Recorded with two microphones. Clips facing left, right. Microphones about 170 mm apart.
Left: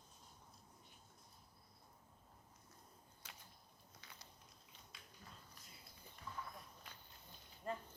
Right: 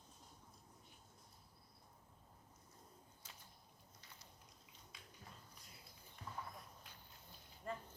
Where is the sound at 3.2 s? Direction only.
70° left (ahead or behind).